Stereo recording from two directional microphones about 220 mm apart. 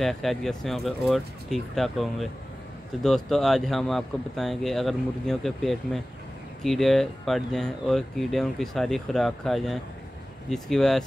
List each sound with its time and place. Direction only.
0.0 s speech: centre (ahead or behind)